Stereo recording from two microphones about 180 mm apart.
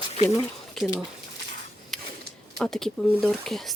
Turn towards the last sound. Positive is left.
turn(degrees=0)  # may be behind; listen again after turning